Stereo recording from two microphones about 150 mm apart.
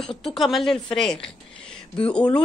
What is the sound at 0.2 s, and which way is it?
A woman's voice, centre (ahead or behind).